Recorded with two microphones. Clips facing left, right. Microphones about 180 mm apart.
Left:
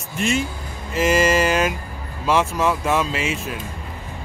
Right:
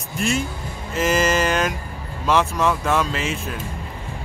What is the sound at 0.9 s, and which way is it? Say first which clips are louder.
Mantra: left 2 dB; 5° left (ahead or behind).